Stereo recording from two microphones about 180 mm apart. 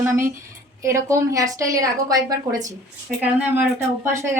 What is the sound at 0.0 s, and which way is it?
A woman's voice, 15° right (ahead or behind).